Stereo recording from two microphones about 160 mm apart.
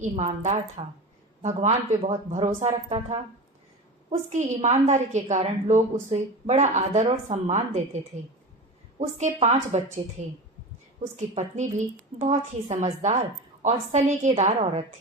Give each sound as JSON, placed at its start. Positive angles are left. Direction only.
{"t": 0.0, "sound": "a woman's voice", "side_deg": -45}
{"t": 9.0, "sound": "a woman's voice", "side_deg": -45}
{"t": 11.3, "sound": "a woman's voice", "side_deg": -50}